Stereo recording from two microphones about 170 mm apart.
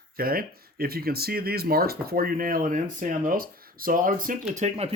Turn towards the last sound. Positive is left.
turn(degrees=-40)  # may be behind; listen again after turning